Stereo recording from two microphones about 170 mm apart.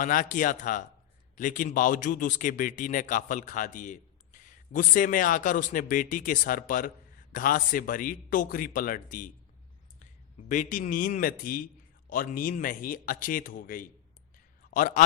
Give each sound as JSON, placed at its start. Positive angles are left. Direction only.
{"t": 0.0, "sound": "a man's voice", "side_deg": 50}
{"t": 10.5, "sound": "a man's voice", "side_deg": 50}
{"t": 14.3, "sound": "a sound", "side_deg": 50}